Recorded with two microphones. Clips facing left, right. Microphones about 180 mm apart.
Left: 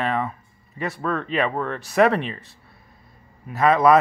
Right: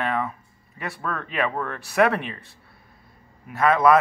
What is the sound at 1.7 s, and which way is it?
Speech, centre (ahead or behind).